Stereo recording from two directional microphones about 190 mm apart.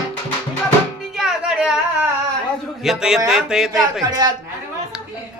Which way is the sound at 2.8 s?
5° right (ahead or behind).